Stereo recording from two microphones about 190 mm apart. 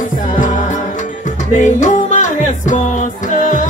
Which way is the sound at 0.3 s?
45° left (ahead or behind).